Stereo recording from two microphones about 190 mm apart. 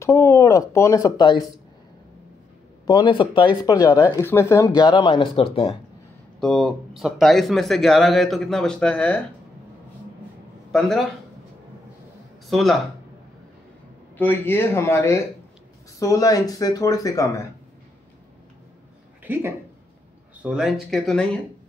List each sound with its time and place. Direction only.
0.0 s speech: 15° left (ahead or behind)
2.9 s speech: 25° left (ahead or behind)
6.4 s a man's voice: centre (ahead or behind)
10.7 s speech: centre (ahead or behind)
12.4 s speech: centre (ahead or behind)
14.1 s speech: 10° left (ahead or behind)
19.2 s a woman's voice: 10° right (ahead or behind)